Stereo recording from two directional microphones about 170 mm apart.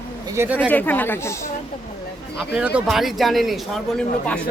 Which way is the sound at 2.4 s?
10° right (ahead or behind).